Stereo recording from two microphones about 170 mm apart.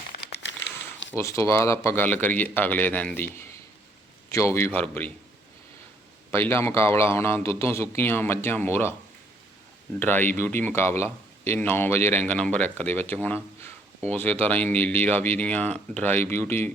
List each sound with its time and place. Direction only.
0.2 s crumpling: 85° left
1.1 s speech: 15° left (ahead or behind)
6.3 s speech: 15° left (ahead or behind)
10.0 s speech: 10° left (ahead or behind)